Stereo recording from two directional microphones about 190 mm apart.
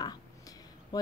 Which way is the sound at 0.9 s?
20° left (ahead or behind).